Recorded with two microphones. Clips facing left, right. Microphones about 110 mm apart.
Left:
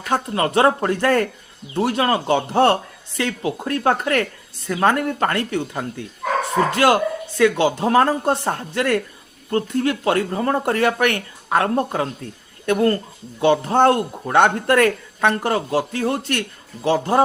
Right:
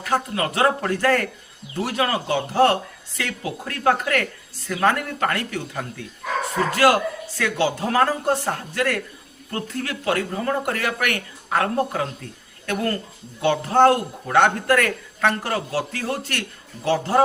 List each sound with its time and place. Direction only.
0.1 s speech: 30° left (ahead or behind)